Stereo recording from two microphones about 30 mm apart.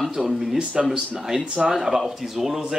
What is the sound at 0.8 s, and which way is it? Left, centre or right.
Speech, right.